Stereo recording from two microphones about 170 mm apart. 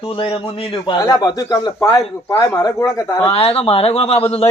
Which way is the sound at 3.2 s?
35° left (ahead or behind).